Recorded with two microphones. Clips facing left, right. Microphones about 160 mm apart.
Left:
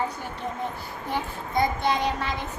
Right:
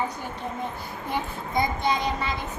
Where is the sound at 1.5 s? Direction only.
15° right (ahead or behind).